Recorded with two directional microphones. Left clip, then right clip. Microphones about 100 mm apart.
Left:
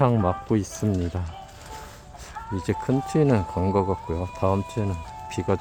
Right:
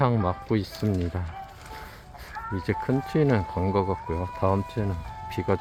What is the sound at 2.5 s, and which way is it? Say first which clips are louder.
Speech: left 2 dB; 10° left (ahead or behind).